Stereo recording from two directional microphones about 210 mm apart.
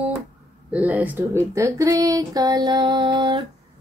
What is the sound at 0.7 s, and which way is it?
Speech, 10° right (ahead or behind).